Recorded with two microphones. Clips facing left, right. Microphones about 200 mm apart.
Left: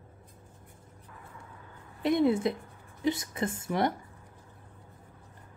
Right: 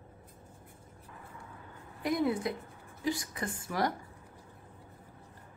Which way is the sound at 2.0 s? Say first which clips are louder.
Left 5 dB; 25° left (ahead or behind).